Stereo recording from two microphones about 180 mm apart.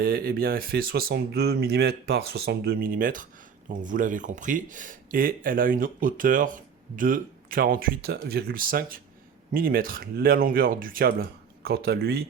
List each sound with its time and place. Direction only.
0.0 s speech: 60° right (ahead or behind)